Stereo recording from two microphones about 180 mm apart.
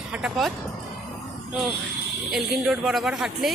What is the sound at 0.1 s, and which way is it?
Speech, 5° right (ahead or behind).